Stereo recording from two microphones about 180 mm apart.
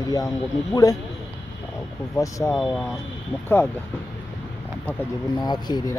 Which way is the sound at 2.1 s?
15° left (ahead or behind).